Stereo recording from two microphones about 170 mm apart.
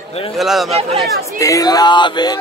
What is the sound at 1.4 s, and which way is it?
Speech, 20° left (ahead or behind).